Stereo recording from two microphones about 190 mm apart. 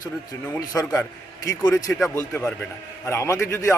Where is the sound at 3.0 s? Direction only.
15° left (ahead or behind).